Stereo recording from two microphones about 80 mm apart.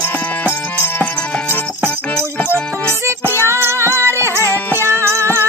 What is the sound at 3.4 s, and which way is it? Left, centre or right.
Music, right.